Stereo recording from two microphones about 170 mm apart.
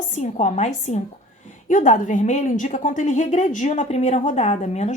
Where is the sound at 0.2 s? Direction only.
40° left (ahead or behind).